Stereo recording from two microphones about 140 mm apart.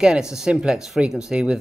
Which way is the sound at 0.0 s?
5° right (ahead or behind).